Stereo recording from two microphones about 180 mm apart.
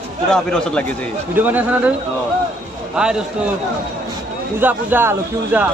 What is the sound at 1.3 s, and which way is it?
Speech, 10° right (ahead or behind).